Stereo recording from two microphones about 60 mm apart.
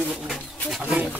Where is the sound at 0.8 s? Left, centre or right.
Right.